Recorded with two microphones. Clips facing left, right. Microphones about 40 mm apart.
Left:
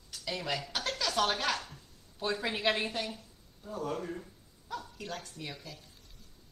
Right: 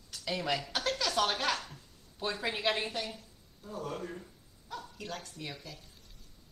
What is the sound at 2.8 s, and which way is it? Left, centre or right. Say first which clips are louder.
Speech: left 1 dB; centre.